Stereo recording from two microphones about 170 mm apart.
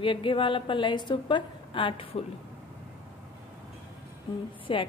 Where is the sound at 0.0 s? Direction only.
30° left (ahead or behind).